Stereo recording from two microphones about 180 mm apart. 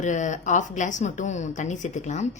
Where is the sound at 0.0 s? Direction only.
40° left (ahead or behind).